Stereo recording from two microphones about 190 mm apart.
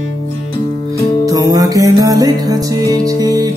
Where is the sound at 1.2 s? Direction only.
20° right (ahead or behind).